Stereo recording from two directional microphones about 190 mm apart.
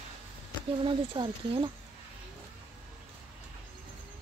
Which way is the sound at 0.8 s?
30° right (ahead or behind).